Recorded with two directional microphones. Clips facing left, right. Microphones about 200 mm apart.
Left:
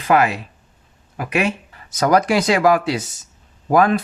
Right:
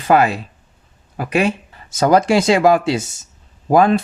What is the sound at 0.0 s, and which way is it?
Speech, 30° right (ahead or behind).